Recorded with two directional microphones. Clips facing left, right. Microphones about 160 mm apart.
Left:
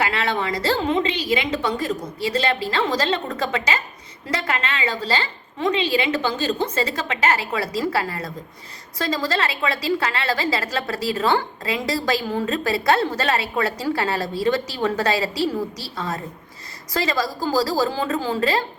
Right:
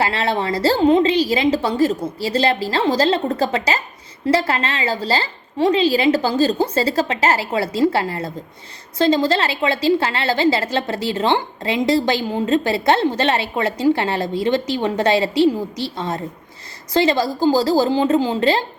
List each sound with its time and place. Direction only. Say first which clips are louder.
0.0 s a woman's voice: right 3 dB; 30° right (ahead or behind)